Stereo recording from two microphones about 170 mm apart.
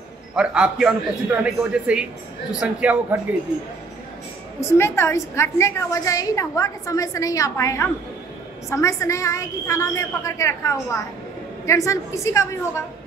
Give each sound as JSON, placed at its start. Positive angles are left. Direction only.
{"t": 0.4, "sound": "a man's voice", "side_deg": -5}
{"t": 4.6, "sound": "a woman's voice", "side_deg": 15}